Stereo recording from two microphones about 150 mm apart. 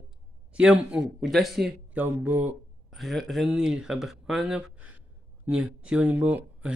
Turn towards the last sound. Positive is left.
turn(degrees=-10)  # may be behind; listen again after turning